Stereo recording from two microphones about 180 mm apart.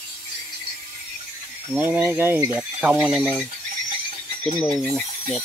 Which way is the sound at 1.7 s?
10° right (ahead or behind).